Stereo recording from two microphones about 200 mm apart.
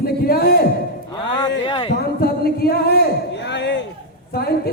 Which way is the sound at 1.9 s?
50° left (ahead or behind).